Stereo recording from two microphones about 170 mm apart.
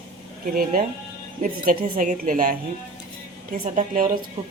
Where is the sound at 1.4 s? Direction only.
50° right (ahead or behind).